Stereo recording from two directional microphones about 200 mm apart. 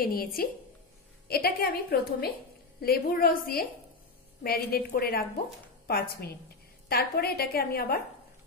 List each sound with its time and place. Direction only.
0.0 s a woman's voice: 45° left (ahead or behind)